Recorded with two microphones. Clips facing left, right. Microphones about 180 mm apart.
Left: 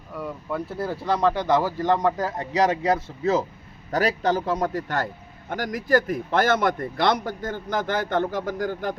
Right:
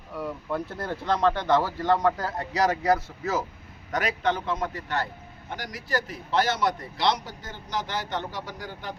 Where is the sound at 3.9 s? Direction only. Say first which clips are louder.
Left 4 dB; 35° left (ahead or behind).